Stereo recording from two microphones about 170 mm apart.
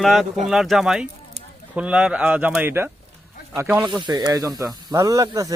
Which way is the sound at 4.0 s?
25° right (ahead or behind).